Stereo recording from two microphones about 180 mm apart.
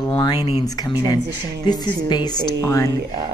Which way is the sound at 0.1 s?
25° left (ahead or behind).